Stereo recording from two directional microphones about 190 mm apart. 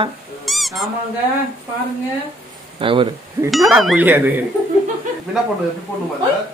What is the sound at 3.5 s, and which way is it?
Speech, centre (ahead or behind).